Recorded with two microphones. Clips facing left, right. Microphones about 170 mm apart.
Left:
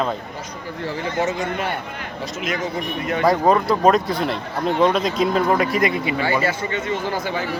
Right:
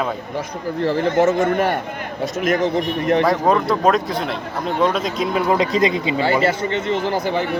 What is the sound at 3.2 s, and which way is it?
Speech, centre (ahead or behind).